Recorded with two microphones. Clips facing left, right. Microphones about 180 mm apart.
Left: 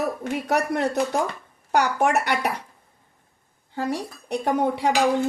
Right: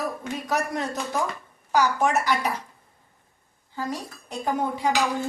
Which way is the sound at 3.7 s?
65° left (ahead or behind).